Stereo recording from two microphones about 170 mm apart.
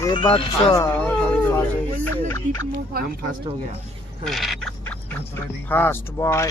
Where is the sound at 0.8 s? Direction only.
10° left (ahead or behind).